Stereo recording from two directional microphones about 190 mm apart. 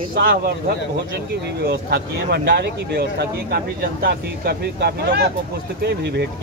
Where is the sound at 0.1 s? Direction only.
55° right (ahead or behind).